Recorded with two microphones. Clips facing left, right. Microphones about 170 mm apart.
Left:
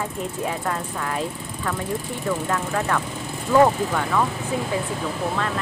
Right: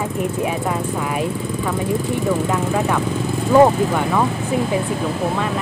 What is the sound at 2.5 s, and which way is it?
Speech, 15° right (ahead or behind).